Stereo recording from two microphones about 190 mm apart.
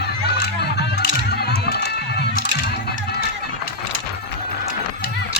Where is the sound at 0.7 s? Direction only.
60° left (ahead or behind).